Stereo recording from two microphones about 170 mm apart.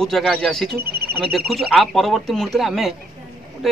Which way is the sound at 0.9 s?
65° right (ahead or behind).